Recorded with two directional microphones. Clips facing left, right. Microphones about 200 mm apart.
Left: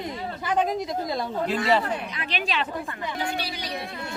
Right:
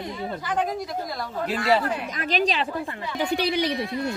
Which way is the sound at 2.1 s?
40° right (ahead or behind).